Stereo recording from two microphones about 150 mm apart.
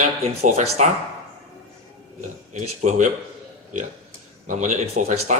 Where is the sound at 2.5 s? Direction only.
55° right (ahead or behind).